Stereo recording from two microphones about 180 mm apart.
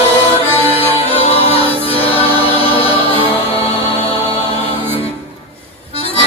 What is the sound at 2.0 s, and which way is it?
Music, 30° left (ahead or behind).